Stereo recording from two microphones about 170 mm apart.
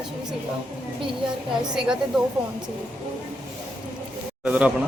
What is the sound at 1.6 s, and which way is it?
Speech, 5° right (ahead or behind).